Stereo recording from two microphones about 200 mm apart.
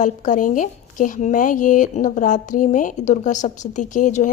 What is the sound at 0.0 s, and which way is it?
A woman's voice, 40° left (ahead or behind).